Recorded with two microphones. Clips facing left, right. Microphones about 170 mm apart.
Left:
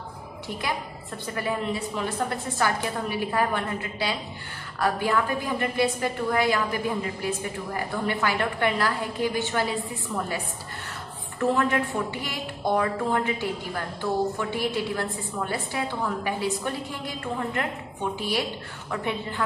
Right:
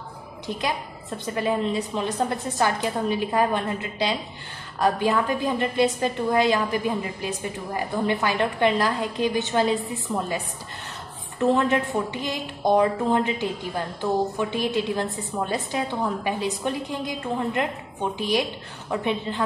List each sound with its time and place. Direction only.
0.6 s a woman's voice: 20° right (ahead or behind)